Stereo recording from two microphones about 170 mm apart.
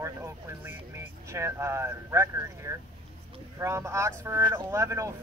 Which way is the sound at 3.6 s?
15° right (ahead or behind).